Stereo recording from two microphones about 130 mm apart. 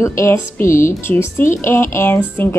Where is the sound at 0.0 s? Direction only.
20° left (ahead or behind).